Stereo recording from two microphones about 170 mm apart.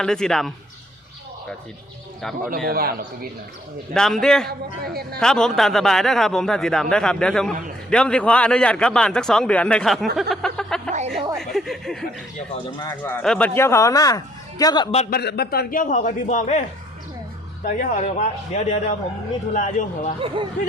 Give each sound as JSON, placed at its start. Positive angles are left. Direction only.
{"t": 0.0, "sound": "a man's voice", "side_deg": 5}
{"t": 2.6, "sound": "a man's voice", "side_deg": -60}
{"t": 3.9, "sound": "a man's voice", "side_deg": 5}
{"t": 4.4, "sound": "a man's voice", "side_deg": -65}
{"t": 5.2, "sound": "a man's voice", "side_deg": 5}
{"t": 10.2, "sound": "a sound", "side_deg": 0}
{"t": 10.9, "sound": "a sound", "side_deg": -40}
{"t": 11.3, "sound": "a sound", "side_deg": 0}
{"t": 12.9, "sound": "speech", "side_deg": 10}
{"t": 13.6, "sound": "speech", "side_deg": 15}
{"t": 15.1, "sound": "a man's voice", "side_deg": 75}
{"t": 17.7, "sound": "a man's voice", "side_deg": 50}
{"t": 20.2, "sound": "speech", "side_deg": -30}